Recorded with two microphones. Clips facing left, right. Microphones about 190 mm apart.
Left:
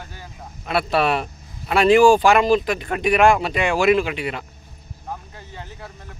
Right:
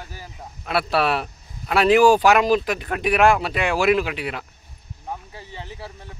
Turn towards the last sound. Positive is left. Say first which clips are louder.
# right 1 dB
turn(degrees=-5)  # may be behind; listen again after turning